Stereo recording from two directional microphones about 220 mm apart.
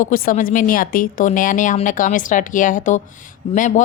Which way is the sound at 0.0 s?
40° left (ahead or behind).